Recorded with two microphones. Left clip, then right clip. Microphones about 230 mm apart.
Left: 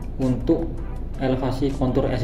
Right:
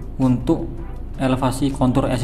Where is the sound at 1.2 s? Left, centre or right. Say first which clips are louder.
Right 3 dB; right.